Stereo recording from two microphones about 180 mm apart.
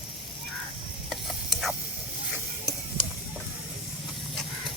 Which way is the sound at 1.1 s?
Centre (ahead or behind).